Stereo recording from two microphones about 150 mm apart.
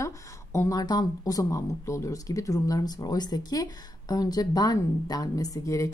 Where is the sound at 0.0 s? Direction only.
20° left (ahead or behind).